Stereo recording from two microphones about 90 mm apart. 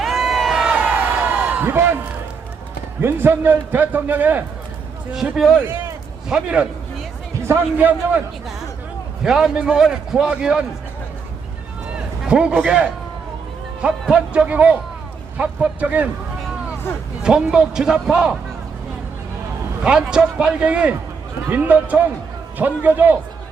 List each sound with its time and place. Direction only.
0.0 s a sound: 5° right (ahead or behind); by 2.0 s 25° right (ahead or behind)
3.0 s a man's voice: 25° right (ahead or behind)
5.1 s a man's voice: centre (ahead or behind)
7.4 s a man's voice: 25° right (ahead or behind)
9.2 s a man's voice: 5° right (ahead or behind)
12.3 s a man's voice: 10° right (ahead or behind)
14.1 s a man's voice: 15° right (ahead or behind)
17.2 s a man's voice: 10° right (ahead or behind)
19.8 s a man's voice: 10° right (ahead or behind)